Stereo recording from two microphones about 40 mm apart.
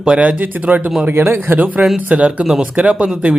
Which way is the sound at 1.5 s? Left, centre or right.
Right.